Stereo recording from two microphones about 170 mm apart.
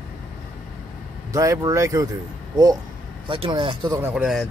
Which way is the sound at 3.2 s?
30° right (ahead or behind).